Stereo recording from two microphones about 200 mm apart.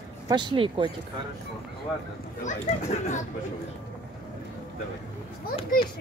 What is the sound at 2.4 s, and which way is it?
Speech, 35° left (ahead or behind).